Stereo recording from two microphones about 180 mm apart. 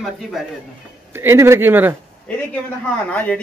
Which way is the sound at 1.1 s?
15° right (ahead or behind).